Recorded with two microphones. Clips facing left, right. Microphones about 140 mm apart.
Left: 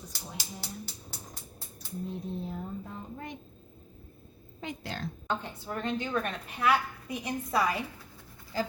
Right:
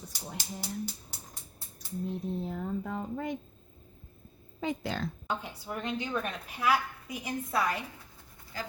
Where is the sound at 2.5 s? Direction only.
85° right.